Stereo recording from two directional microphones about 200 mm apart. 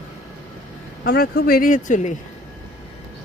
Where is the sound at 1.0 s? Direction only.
50° left (ahead or behind).